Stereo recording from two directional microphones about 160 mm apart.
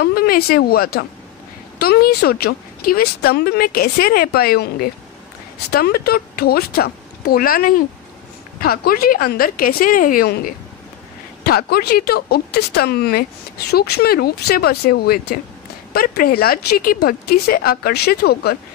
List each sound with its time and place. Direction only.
0.0 s speech: 70° left (ahead or behind)
13.7 s speech: 85° left